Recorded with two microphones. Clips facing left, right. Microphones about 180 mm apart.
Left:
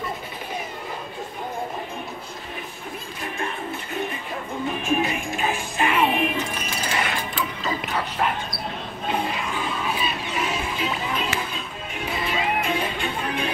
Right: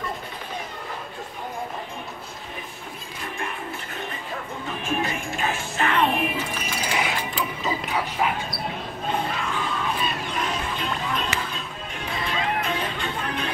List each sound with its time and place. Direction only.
4.6 s music: 15° left (ahead or behind); by 8.5 s 5° right (ahead or behind)
9.1 s crowd: 15° left (ahead or behind)
12.1 s music: 5° left (ahead or behind)